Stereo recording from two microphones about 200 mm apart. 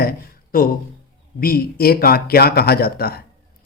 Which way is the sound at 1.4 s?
50° left (ahead or behind).